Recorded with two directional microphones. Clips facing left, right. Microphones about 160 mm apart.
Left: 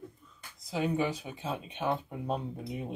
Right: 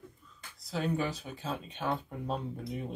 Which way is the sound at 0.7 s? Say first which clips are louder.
Left 2 dB; 15° left (ahead or behind).